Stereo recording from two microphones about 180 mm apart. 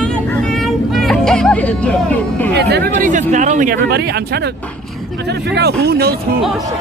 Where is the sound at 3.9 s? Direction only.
65° right (ahead or behind).